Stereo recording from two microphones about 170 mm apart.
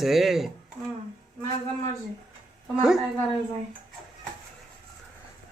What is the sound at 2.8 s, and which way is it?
Speech, centre (ahead or behind).